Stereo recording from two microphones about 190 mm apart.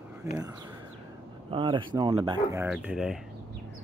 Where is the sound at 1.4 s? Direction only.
25° right (ahead or behind).